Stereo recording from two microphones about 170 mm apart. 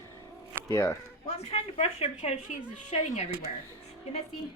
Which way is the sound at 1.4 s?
40° left (ahead or behind).